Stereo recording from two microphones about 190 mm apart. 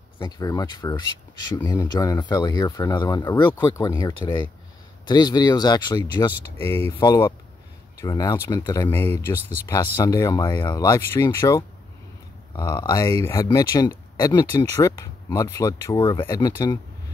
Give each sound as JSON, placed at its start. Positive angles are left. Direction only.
{"t": 0.2, "sound": "speech", "side_deg": 20}
{"t": 6.6, "sound": "speech", "side_deg": 10}